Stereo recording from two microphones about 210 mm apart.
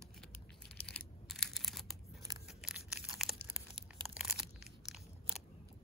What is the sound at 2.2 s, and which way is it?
Tearing, 15° right (ahead or behind).